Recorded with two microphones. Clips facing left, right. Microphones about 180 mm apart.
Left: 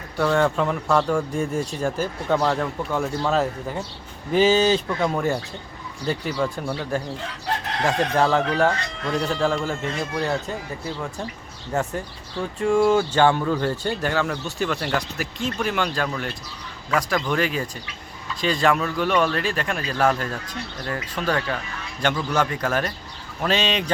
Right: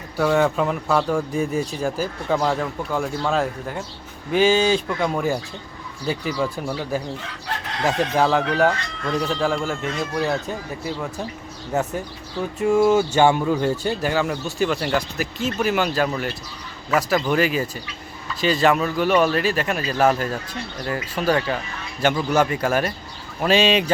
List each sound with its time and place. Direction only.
0.2 s speech: 5° right (ahead or behind)
9.2 s speech: centre (ahead or behind)
11.7 s speech: 20° right (ahead or behind)
12.9 s speech: 10° right (ahead or behind)